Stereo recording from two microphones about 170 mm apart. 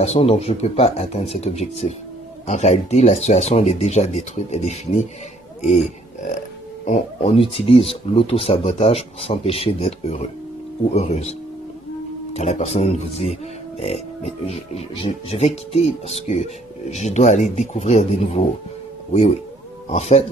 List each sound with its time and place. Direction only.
0.0 s speech: 35° left (ahead or behind)
6.8 s speech: 45° left (ahead or behind)
12.4 s a man's voice: 40° left (ahead or behind)
19.9 s speech: 40° left (ahead or behind)